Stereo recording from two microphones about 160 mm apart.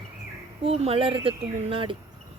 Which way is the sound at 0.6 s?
35° right (ahead or behind).